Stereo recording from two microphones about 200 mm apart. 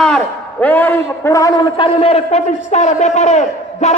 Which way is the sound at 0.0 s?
5° left (ahead or behind).